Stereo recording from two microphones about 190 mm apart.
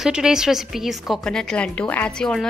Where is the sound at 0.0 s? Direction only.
5° right (ahead or behind).